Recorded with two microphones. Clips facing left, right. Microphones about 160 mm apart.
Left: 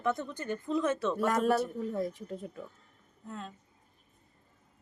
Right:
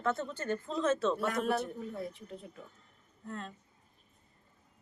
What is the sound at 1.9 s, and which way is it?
Speech, 40° left (ahead or behind).